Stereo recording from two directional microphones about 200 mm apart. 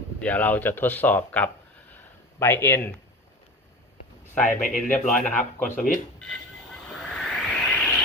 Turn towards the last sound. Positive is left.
turn(degrees=5)  # may be behind; listen again after turning